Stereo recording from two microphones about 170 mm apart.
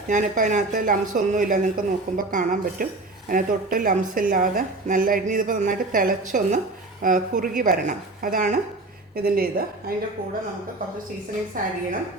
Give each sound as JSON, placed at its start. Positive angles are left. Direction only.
{"t": 0.1, "sound": "a woman's voice", "side_deg": -50}
{"t": 11.6, "sound": "a woman's voice", "side_deg": -55}